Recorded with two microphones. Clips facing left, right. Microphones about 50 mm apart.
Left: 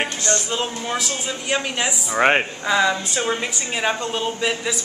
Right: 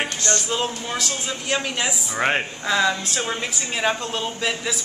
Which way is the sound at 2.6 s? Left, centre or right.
Centre.